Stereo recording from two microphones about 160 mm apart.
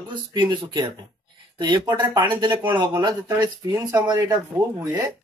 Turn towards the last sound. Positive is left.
turn(degrees=-20)  # may be behind; listen again after turning